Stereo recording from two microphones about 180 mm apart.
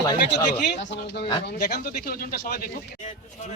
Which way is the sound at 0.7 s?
80° left.